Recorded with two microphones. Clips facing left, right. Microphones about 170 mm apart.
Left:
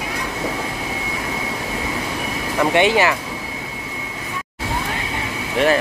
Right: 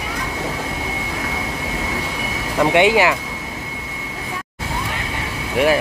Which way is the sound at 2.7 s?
15° right (ahead or behind).